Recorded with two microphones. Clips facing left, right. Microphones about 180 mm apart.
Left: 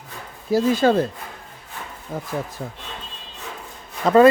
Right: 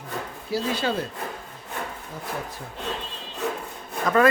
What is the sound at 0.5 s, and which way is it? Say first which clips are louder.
Speech: left 9 dB; 45° left (ahead or behind).